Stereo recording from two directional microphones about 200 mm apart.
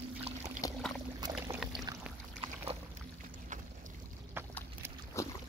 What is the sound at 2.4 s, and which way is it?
Boat, 30° right (ahead or behind).